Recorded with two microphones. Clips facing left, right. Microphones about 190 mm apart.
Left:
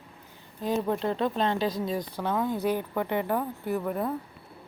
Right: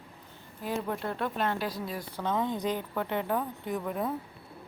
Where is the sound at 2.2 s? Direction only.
10° left (ahead or behind).